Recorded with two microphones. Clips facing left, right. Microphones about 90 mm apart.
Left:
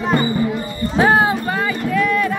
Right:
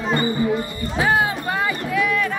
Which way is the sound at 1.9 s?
5° right (ahead or behind).